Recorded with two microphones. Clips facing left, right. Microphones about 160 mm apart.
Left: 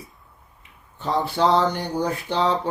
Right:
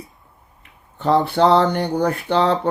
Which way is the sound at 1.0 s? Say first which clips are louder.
Right 6 dB; 60° right (ahead or behind).